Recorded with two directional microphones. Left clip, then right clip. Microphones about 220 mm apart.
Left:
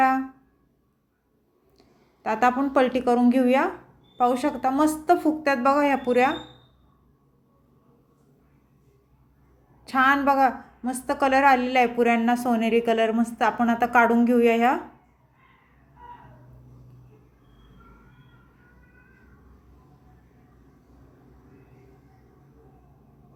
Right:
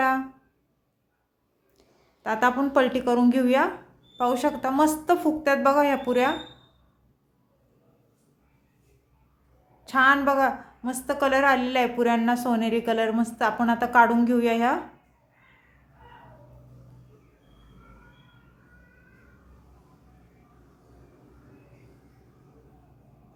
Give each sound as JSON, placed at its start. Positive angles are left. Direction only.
{"t": 1.8, "sound": "a woman's voice", "side_deg": 5}
{"t": 9.8, "sound": "a woman's voice", "side_deg": 5}